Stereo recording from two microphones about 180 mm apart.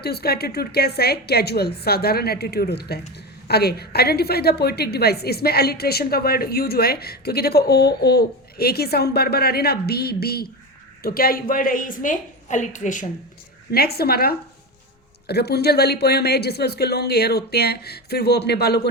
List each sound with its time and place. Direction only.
0.0 s a woman's voice: 60° left (ahead or behind); by 13.1 s 45° left (ahead or behind)
13.7 s a woman's voice: 60° left (ahead or behind)